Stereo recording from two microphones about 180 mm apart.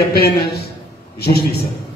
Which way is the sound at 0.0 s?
60° left (ahead or behind).